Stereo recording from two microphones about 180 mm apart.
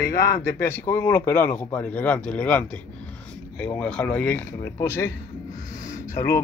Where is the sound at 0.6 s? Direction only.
15° left (ahead or behind).